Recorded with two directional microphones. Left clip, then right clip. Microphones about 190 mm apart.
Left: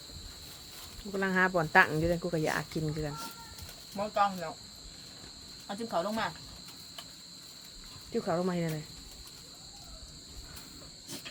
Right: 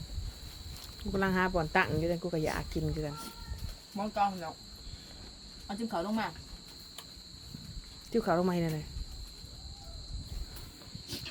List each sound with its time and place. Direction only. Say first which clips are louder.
1.1 s cricket: right 1 dB; 15° right (ahead or behind)
1.4 s speech: left 7 dB; centre (ahead or behind)
3.9 s speech: left 2 dB; 15° left (ahead or behind)
5.6 s speech: left 2 dB; 20° left (ahead or behind)
8.1 s cricket: right 2 dB; 20° right (ahead or behind)